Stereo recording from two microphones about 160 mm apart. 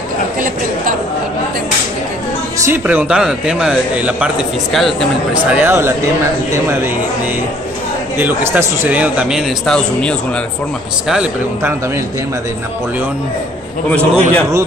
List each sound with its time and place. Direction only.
2.6 s speech: 10° right (ahead or behind)
8.2 s speech: 15° right (ahead or behind)
13.8 s a man's voice: 10° left (ahead or behind)